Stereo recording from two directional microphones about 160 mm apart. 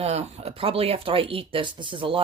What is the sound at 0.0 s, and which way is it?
Speech, 40° right (ahead or behind).